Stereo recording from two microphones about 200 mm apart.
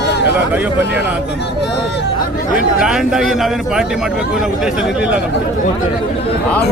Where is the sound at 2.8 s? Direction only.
5° right (ahead or behind).